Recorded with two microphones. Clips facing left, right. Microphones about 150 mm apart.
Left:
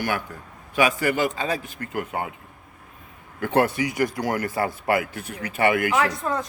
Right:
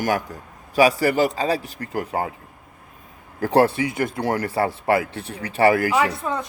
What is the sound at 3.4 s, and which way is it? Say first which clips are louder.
A man's voice: right 4 dB; 35° right (ahead or behind).